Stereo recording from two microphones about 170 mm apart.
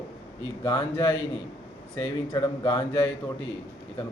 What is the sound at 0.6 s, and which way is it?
A man's voice, 15° left (ahead or behind).